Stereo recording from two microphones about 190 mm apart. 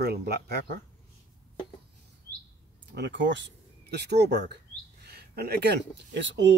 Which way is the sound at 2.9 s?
70° right (ahead or behind).